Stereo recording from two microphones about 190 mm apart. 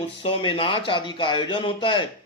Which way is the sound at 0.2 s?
30° left (ahead or behind).